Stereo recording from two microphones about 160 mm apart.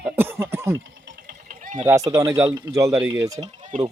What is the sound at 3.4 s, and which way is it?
Speech, 45° right (ahead or behind).